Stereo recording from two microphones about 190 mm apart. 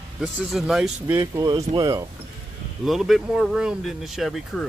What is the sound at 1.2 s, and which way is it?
Speech, 20° right (ahead or behind).